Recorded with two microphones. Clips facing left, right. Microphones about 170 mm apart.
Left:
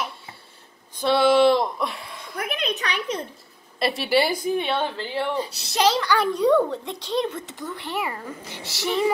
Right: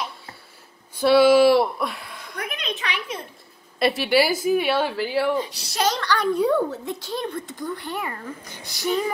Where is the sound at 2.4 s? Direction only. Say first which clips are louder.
Left 3 dB; 35° left (ahead or behind).